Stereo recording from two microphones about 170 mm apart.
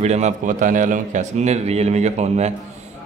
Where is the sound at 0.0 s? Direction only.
40° right (ahead or behind).